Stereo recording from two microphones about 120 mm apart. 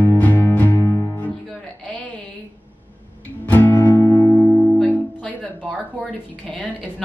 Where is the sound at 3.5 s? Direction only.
15° left (ahead or behind).